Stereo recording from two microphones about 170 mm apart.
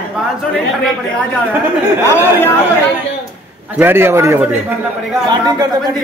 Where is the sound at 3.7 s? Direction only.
15° right (ahead or behind).